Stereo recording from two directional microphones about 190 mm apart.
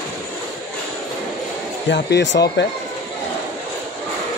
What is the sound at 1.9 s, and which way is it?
Speech, 65° left (ahead or behind).